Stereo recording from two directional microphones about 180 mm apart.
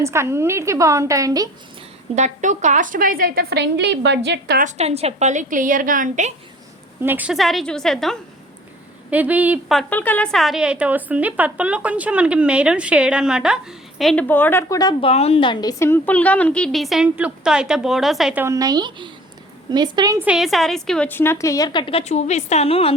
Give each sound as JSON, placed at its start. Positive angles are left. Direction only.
{"t": 0.0, "sound": "a woman's voice", "side_deg": -15}
{"t": 2.1, "sound": "a woman's voice", "side_deg": -40}
{"t": 4.6, "sound": "a woman's voice", "side_deg": -35}
{"t": 7.0, "sound": "a woman's voice", "side_deg": -10}
{"t": 9.0, "sound": "a woman's voice", "side_deg": -10}
{"t": 9.9, "sound": "a woman's voice", "side_deg": 10}
{"t": 15.1, "sound": "a woman's voice", "side_deg": 35}
{"t": 15.8, "sound": "a woman's voice", "side_deg": 10}
{"t": 18.4, "sound": "a woman's voice", "side_deg": -20}
{"t": 20.1, "sound": "a woman's voice", "side_deg": -5}